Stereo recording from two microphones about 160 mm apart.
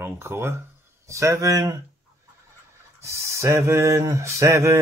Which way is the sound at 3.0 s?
20° right (ahead or behind).